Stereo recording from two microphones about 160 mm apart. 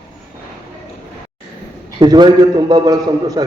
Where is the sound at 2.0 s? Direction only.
25° right (ahead or behind).